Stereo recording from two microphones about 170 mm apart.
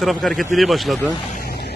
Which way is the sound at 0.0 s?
Centre (ahead or behind).